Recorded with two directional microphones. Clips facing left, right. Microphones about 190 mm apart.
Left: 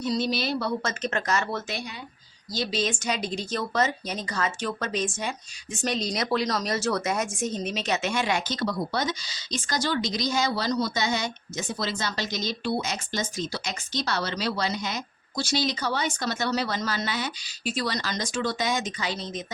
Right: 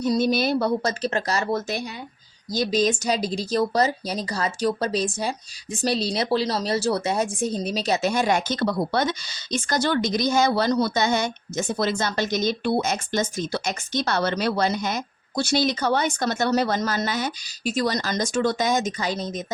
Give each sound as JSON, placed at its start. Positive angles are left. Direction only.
{"t": 0.0, "sound": "a woman's voice", "side_deg": -50}